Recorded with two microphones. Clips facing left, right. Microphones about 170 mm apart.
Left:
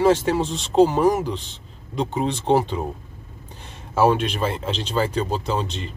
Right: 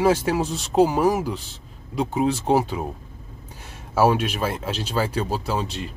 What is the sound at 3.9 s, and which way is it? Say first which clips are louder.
Speech: left 1 dB; 5° right (ahead or behind).